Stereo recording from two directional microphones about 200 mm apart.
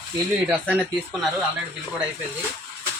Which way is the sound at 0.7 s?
5° left (ahead or behind).